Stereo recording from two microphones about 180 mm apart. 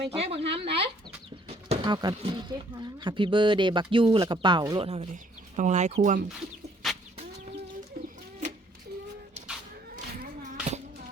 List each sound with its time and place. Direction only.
0.1 s speech: 35° right (ahead or behind)
4.9 s speech: 40° right (ahead or behind)
6.8 s chicken: centre (ahead or behind)
9.9 s a sound: 50° right (ahead or behind)